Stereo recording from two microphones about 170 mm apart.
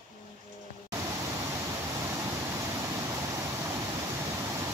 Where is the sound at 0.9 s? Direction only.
20° right (ahead or behind).